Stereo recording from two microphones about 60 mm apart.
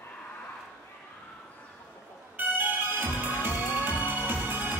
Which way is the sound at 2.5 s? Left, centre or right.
Right.